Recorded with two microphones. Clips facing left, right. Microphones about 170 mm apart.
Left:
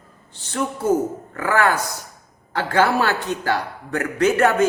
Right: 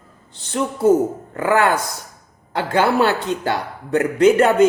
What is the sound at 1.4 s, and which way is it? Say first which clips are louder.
A man's voice: right 3 dB; 20° right (ahead or behind).